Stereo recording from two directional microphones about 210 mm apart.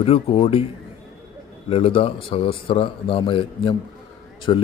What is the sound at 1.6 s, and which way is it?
Speech, 25° left (ahead or behind).